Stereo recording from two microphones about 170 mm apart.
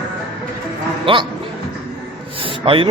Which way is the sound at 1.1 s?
30° right (ahead or behind).